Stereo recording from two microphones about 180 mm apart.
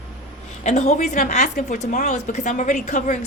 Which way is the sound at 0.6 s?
40° left (ahead or behind).